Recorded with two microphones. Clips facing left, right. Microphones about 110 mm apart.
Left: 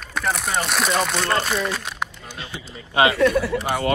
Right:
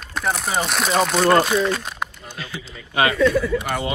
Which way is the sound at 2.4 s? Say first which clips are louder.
Right 2 dB; 25° left (ahead or behind).